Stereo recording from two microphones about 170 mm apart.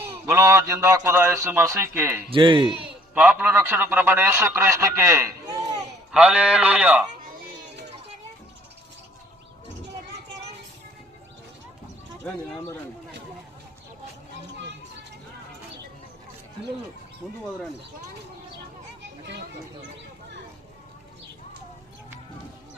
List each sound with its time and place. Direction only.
0.0 s a man's voice: 15° right (ahead or behind)
2.3 s a man's voice: 30° right (ahead or behind)
3.2 s a man's voice: 5° right (ahead or behind)
6.1 s a man's voice: 5° right (ahead or behind)
12.2 s speech: 15° left (ahead or behind)
17.2 s speech: 5° right (ahead or behind)